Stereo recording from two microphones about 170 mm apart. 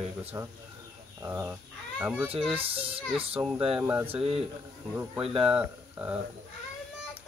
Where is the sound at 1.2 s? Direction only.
15° right (ahead or behind).